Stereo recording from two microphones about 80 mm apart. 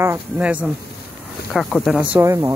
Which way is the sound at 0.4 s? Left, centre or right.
Centre.